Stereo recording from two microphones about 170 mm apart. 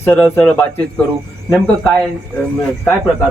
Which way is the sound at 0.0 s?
10° left (ahead or behind).